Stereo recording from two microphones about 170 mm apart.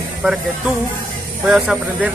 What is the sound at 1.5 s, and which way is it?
Speech, 5° right (ahead or behind).